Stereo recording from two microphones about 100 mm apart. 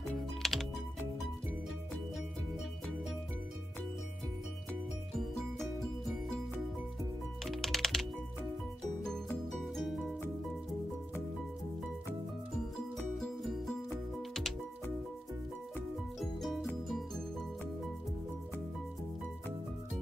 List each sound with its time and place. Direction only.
0.4 s music: 5° left (ahead or behind)
7.4 s music: centre (ahead or behind)
12.9 s music: 5° left (ahead or behind)
16.2 s music: centre (ahead or behind)